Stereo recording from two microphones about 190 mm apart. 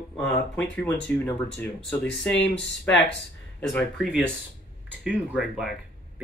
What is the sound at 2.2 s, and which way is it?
Speech, 65° left (ahead or behind).